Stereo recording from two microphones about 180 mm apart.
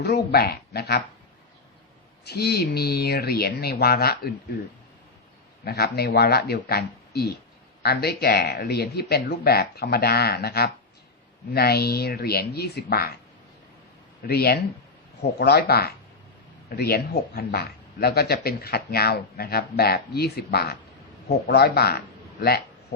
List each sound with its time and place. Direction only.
0.0 s speech: 65° left (ahead or behind)
2.2 s speech: 65° left (ahead or behind)
5.6 s speech: 65° left (ahead or behind)
14.3 s speech: 60° left (ahead or behind)